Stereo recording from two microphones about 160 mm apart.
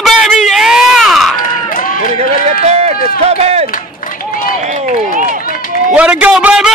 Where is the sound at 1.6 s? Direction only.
60° left (ahead or behind).